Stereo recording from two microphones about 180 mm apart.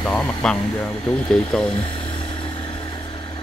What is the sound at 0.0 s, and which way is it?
Speech, 5° left (ahead or behind).